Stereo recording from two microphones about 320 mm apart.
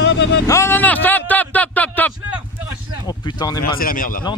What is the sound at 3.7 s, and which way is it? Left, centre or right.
Speech, left.